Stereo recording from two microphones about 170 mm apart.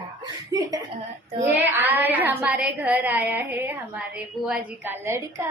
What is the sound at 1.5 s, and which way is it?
Speech, 10° right (ahead or behind).